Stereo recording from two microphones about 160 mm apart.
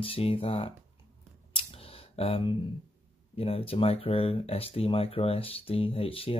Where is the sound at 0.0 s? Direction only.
35° left (ahead or behind).